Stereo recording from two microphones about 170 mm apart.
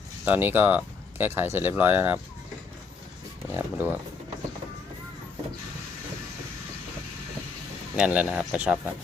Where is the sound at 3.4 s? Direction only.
15° right (ahead or behind).